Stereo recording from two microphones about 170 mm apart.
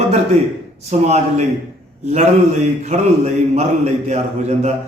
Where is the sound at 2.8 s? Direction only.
40° right (ahead or behind).